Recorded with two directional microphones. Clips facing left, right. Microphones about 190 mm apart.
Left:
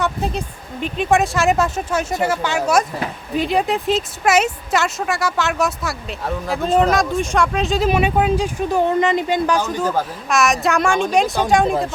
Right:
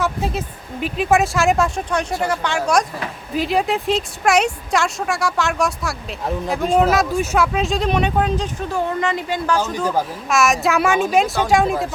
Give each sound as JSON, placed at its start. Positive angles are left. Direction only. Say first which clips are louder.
{"t": 0.0, "sound": "speech", "louder": "even", "side_deg": -5}
{"t": 8.7, "sound": "a woman's voice", "louder": "left 5 dB", "side_deg": 20}
{"t": 9.7, "sound": "speech", "louder": "even", "side_deg": -10}